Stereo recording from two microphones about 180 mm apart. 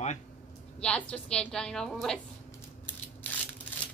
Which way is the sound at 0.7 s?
5° left (ahead or behind).